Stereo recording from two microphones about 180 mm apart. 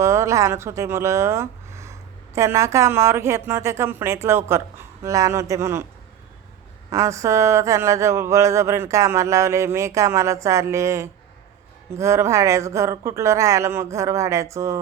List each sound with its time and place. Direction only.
0.0 s speech: 15° right (ahead or behind)
6.9 s speech: 15° right (ahead or behind)